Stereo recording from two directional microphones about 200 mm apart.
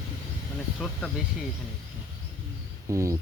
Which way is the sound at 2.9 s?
15° right (ahead or behind).